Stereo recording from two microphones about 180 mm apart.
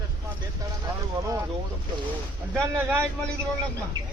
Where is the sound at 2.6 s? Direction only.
10° right (ahead or behind).